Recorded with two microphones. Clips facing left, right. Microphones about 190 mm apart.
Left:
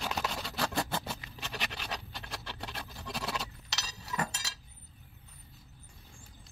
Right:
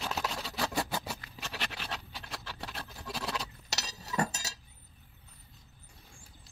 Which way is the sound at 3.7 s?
40° right (ahead or behind).